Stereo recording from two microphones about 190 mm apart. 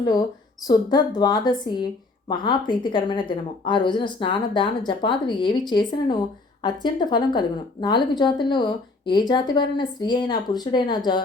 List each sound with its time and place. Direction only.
0.7 s a woman's voice: 20° left (ahead or behind)
6.6 s a woman's voice: 25° left (ahead or behind)